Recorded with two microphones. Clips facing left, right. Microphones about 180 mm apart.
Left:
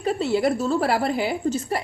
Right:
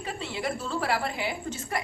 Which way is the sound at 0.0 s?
40° left (ahead or behind).